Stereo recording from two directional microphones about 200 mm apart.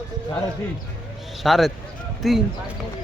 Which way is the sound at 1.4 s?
Centre (ahead or behind).